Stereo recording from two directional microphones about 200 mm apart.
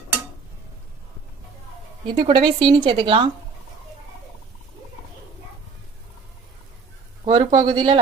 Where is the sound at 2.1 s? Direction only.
25° right (ahead or behind).